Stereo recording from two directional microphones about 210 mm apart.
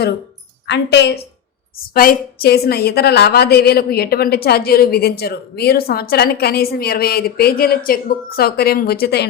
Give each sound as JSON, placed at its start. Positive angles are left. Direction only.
{"t": 0.7, "sound": "a woman's voice", "side_deg": 55}